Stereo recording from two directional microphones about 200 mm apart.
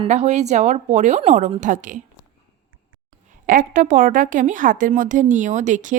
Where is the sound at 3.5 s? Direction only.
40° right (ahead or behind).